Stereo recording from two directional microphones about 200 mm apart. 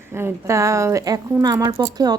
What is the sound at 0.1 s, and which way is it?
A woman's voice, 10° right (ahead or behind).